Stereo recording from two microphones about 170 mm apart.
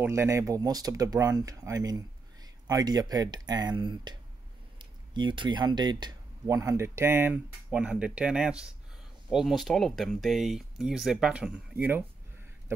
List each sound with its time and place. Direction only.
0.0 s speech: 15° right (ahead or behind)